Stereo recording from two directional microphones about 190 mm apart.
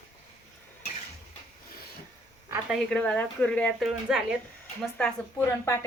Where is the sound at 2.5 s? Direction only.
Centre (ahead or behind).